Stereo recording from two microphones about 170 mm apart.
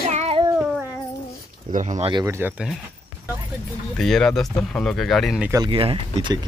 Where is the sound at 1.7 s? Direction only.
45° right (ahead or behind).